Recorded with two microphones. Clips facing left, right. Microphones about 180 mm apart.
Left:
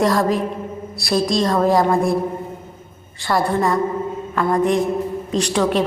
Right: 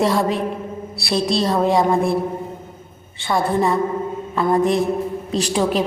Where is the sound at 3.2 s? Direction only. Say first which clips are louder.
Even; centre (ahead or behind).